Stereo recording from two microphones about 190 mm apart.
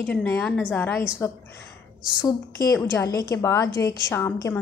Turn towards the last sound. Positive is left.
turn(degrees=10)  # may be behind; listen again after turning